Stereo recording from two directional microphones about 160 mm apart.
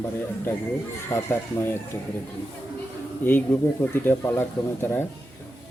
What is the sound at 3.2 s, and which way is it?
Speech, 10° left (ahead or behind).